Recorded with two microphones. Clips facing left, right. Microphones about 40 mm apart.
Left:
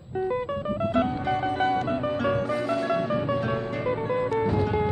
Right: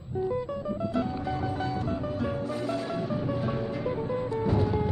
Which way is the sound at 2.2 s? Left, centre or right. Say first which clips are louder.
Left 5 dB; left.